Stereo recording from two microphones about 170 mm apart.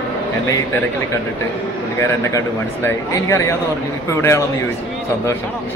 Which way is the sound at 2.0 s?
15° left (ahead or behind).